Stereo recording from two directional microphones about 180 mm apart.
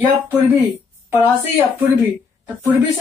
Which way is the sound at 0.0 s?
15° right (ahead or behind).